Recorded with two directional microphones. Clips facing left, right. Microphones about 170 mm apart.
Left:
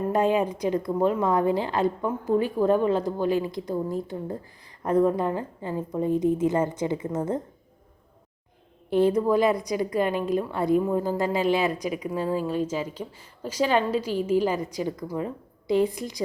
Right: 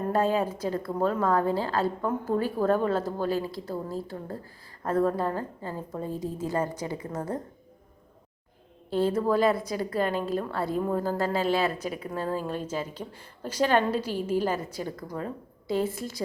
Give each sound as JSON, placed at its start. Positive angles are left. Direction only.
{"t": 0.1, "sound": "a woman's voice", "side_deg": 15}
{"t": 8.9, "sound": "a woman's voice", "side_deg": 15}